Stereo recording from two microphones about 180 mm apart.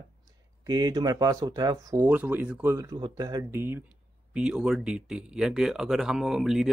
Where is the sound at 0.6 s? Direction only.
20° right (ahead or behind).